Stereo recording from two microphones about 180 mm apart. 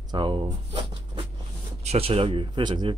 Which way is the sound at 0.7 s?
30° right (ahead or behind).